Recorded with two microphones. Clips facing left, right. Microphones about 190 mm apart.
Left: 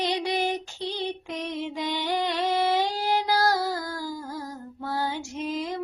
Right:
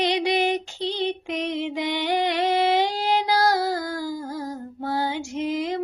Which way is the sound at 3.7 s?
60° right (ahead or behind).